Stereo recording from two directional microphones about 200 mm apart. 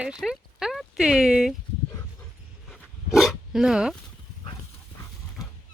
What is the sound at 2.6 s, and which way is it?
Dog, centre (ahead or behind).